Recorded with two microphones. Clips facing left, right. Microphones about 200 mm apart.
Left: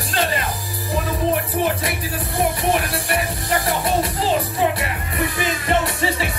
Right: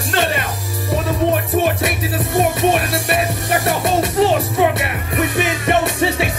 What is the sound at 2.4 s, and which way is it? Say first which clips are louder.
Music: right 4 dB; 70° right (ahead or behind).